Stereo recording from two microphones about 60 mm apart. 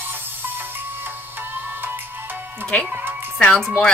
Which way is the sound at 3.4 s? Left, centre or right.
Centre.